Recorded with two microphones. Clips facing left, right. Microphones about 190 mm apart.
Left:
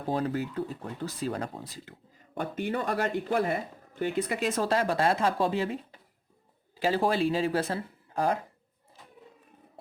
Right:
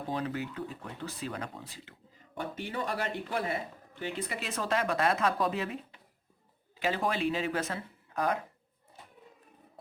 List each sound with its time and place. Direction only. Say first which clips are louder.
0.1 s speech: left 6 dB; 40° left (ahead or behind)